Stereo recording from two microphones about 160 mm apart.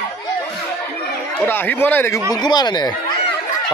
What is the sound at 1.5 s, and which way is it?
Speech, 15° left (ahead or behind).